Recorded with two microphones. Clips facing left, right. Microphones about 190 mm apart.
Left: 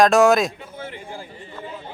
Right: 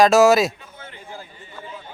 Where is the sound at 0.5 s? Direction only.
30° left (ahead or behind).